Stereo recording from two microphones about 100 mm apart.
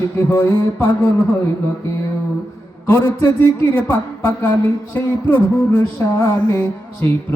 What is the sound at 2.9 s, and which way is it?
Music, 20° left (ahead or behind).